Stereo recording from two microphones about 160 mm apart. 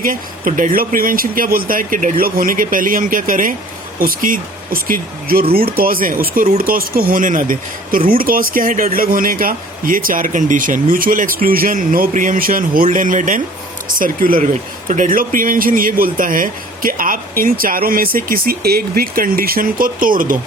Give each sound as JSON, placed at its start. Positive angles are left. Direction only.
{"t": 0.0, "sound": "speech", "side_deg": -60}